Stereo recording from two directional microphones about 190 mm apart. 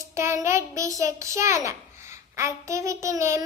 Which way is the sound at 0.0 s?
15° right (ahead or behind).